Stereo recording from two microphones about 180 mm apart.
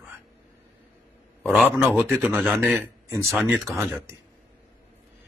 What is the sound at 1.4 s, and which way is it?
Speech, 5° right (ahead or behind).